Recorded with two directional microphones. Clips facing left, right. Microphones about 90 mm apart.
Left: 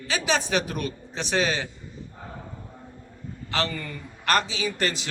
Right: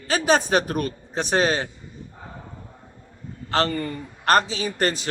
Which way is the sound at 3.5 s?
40° right (ahead or behind).